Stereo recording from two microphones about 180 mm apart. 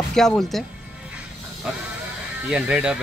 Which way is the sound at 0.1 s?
5° left (ahead or behind).